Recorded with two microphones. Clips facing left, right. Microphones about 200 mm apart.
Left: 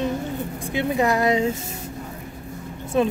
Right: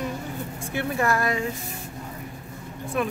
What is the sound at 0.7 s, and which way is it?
Speech, 20° left (ahead or behind).